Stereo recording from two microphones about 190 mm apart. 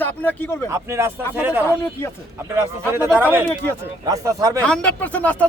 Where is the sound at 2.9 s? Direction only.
10° right (ahead or behind).